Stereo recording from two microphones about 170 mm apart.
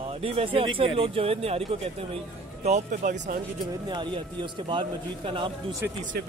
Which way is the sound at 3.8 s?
30° right (ahead or behind).